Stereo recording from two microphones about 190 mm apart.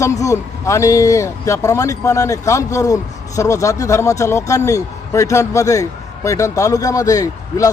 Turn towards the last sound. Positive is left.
turn(degrees=20)  # may be behind; listen again after turning